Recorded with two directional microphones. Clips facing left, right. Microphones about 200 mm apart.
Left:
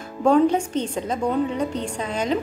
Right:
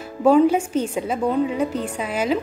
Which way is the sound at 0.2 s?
5° right (ahead or behind).